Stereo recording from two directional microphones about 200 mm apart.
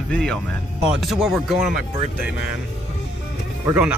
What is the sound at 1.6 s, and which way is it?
Speech, 40° right (ahead or behind).